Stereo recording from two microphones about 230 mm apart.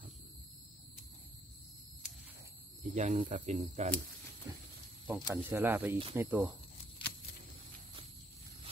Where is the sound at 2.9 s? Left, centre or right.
Right.